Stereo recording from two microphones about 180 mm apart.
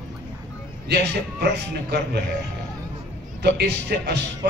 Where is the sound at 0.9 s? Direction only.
65° right (ahead or behind).